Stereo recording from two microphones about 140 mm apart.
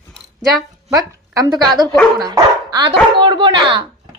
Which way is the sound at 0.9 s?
25° right (ahead or behind).